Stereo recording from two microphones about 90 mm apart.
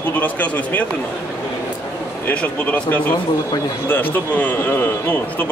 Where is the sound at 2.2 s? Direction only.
15° left (ahead or behind).